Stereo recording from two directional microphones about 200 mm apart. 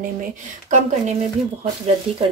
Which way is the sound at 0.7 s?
35° right (ahead or behind).